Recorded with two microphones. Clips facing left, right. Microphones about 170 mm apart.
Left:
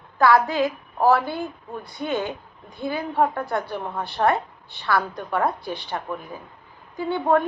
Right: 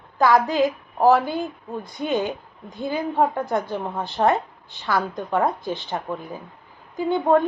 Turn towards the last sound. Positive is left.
turn(degrees=-20)  # may be behind; listen again after turning